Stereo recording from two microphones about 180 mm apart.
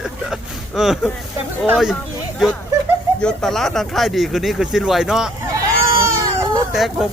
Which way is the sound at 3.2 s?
Centre (ahead or behind).